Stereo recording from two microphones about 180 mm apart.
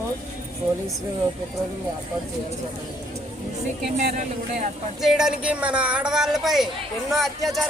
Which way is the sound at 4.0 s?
45° right (ahead or behind).